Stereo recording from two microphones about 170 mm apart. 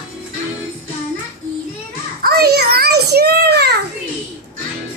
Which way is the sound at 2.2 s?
70° right (ahead or behind).